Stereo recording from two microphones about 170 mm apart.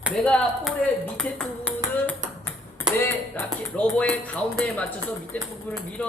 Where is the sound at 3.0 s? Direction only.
10° left (ahead or behind).